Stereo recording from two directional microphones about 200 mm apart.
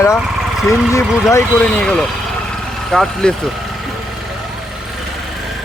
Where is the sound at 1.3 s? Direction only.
10° left (ahead or behind).